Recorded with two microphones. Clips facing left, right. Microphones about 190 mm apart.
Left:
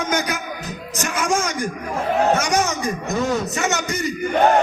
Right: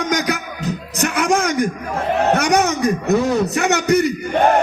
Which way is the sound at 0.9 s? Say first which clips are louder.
Right 4 dB; 65° right (ahead or behind).